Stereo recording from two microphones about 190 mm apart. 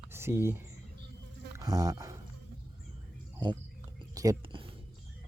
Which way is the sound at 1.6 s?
20° right (ahead or behind).